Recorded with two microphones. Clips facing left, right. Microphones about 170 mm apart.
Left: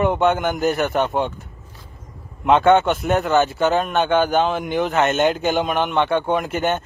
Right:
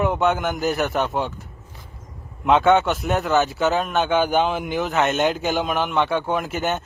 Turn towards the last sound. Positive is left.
turn(degrees=-5)  # may be behind; listen again after turning